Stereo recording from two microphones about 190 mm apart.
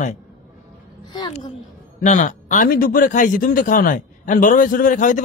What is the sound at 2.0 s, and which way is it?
Speech, 40° left (ahead or behind).